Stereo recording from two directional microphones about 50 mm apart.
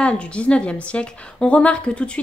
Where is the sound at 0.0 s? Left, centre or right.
Left.